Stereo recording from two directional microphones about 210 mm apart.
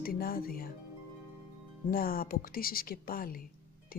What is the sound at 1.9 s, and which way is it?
Speech, 45° left (ahead or behind).